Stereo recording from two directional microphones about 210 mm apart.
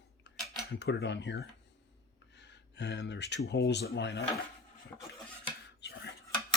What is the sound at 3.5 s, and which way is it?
Speech, 55° left (ahead or behind).